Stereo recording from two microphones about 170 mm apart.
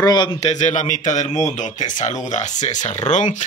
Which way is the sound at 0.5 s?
45° left (ahead or behind).